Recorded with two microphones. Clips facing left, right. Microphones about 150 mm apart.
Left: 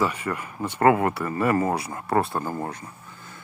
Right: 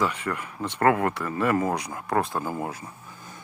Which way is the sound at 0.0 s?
5° left (ahead or behind).